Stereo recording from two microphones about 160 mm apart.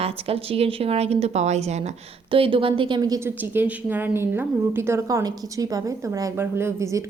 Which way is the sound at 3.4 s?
10° right (ahead or behind).